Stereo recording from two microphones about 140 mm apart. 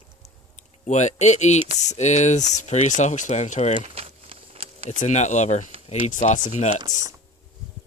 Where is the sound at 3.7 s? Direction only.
45° right (ahead or behind).